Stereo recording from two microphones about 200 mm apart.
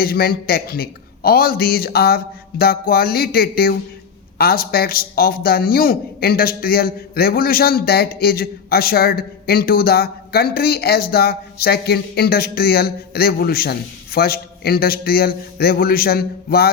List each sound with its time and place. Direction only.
0.0 s a man's voice: 50° left (ahead or behind)